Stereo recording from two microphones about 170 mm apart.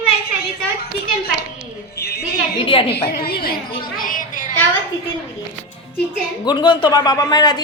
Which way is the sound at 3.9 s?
55° left (ahead or behind).